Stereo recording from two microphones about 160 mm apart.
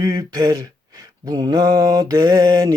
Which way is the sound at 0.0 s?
25° right (ahead or behind).